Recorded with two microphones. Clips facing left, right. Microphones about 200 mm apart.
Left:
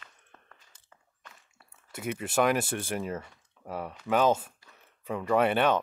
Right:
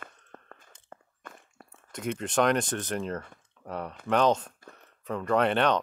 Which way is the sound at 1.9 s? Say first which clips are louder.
Right 1 dB; 5° left (ahead or behind).